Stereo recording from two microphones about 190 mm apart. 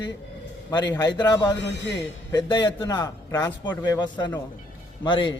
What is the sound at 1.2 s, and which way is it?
Speech, 20° left (ahead or behind).